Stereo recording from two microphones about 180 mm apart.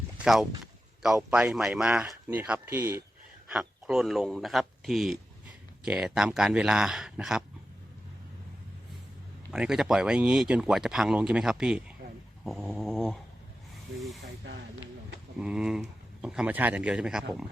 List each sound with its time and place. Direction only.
0.2 s speech: centre (ahead or behind)
3.5 s speech: centre (ahead or behind)
9.5 s speech: 5° right (ahead or behind)
14.4 s speech: 90° right
15.4 s speech: 5° right (ahead or behind)